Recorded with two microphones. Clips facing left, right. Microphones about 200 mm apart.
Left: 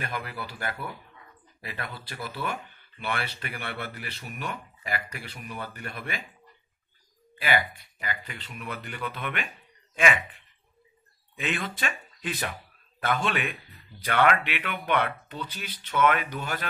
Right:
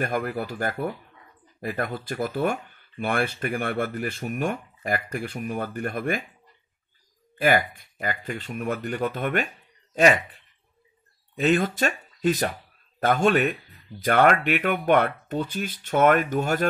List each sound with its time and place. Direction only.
0.0 s speech: 50° right (ahead or behind)
7.3 s speech: 45° right (ahead or behind)